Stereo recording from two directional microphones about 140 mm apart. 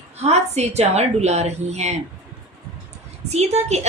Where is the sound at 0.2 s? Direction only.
50° right (ahead or behind).